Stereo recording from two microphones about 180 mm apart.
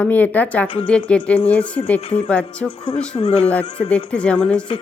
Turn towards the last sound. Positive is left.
turn(degrees=5)  # may be behind; listen again after turning